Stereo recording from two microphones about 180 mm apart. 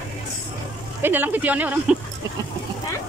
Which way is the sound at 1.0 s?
10° right (ahead or behind).